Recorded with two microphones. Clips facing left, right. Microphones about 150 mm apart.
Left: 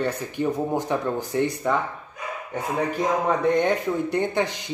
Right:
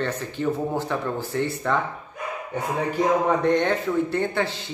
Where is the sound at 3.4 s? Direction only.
10° left (ahead or behind).